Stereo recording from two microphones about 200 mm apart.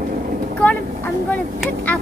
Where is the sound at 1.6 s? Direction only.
5° left (ahead or behind).